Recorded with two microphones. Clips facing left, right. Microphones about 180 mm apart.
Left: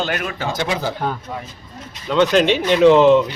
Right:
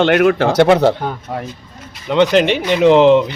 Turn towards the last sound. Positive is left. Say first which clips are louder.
# right 1 dB
turn(degrees=-20)  # may be behind; listen again after turning